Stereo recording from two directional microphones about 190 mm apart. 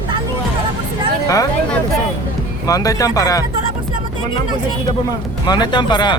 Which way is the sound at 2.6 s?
20° left (ahead or behind).